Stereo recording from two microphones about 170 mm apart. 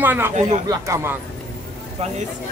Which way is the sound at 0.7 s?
15° right (ahead or behind).